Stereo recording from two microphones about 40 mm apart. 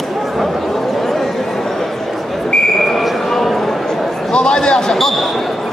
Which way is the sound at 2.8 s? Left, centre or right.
Centre.